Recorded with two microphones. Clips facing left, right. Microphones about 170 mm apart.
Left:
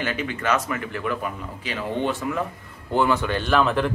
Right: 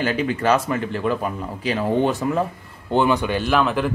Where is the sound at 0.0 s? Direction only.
35° right (ahead or behind).